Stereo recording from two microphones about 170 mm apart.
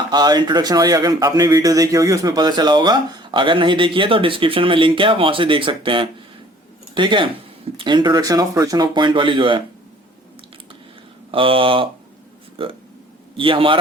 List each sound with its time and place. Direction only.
0.1 s speech: 25° right (ahead or behind)
11.3 s speech: 30° right (ahead or behind)